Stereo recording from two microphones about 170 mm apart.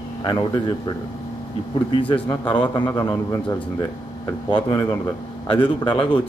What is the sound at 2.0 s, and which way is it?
Speech, 30° left (ahead or behind).